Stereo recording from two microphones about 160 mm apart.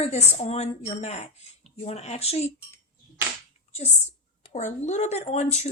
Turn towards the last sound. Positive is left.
turn(degrees=45)  # may be behind; listen again after turning